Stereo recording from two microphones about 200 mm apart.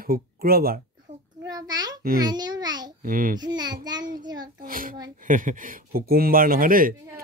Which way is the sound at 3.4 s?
20° right (ahead or behind).